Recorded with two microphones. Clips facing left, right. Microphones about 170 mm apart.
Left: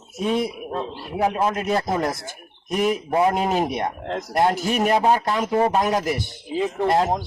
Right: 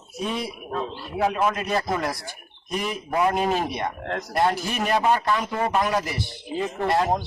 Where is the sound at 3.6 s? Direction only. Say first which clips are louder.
Left 3 dB; 50° left (ahead or behind).